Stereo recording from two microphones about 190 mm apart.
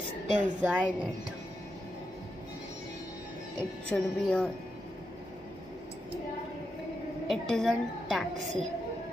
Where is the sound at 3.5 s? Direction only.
5° left (ahead or behind).